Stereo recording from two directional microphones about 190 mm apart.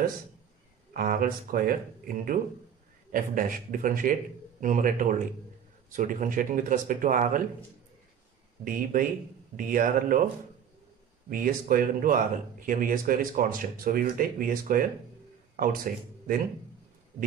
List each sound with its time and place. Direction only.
0.9 s speech: 50° right (ahead or behind)
8.6 s speech: 45° right (ahead or behind)
11.2 s speech: 45° right (ahead or behind)